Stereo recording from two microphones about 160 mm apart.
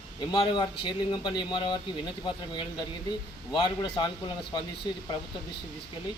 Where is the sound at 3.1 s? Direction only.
30° left (ahead or behind).